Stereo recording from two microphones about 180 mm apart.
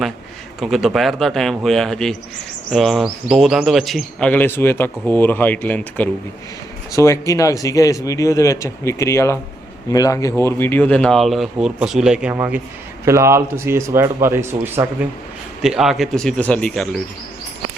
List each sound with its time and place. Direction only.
0.6 s a man's voice: centre (ahead or behind)
15.6 s speech: 5° right (ahead or behind)